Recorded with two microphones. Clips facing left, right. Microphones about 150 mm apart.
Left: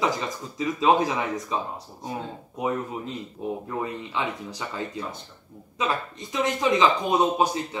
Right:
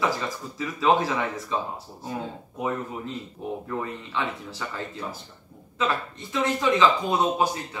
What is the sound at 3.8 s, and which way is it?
Speech, 15° left (ahead or behind).